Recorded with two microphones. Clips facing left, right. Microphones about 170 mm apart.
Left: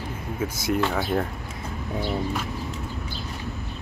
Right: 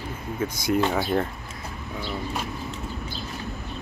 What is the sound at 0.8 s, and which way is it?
Speech, 20° right (ahead or behind).